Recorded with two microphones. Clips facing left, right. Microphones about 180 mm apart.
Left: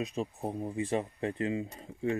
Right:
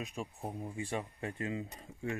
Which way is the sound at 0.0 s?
35° left (ahead or behind).